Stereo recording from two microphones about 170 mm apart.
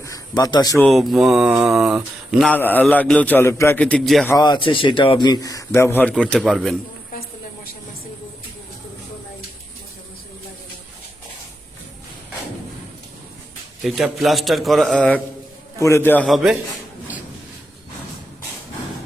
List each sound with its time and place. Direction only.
0.0 s a sound: 20° left (ahead or behind)
0.8 s a man's voice: centre (ahead or behind)
2.5 s a man's voice: 10° left (ahead or behind)
4.3 s a man's voice: 25° left (ahead or behind); by 6.7 s centre (ahead or behind)
13.8 s a man's voice: centre (ahead or behind)
16.2 s a man's voice: centre (ahead or behind)